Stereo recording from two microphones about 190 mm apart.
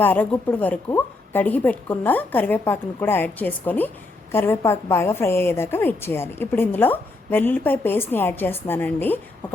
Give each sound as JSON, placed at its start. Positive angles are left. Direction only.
{"t": 0.0, "sound": "a woman's voice", "side_deg": 10}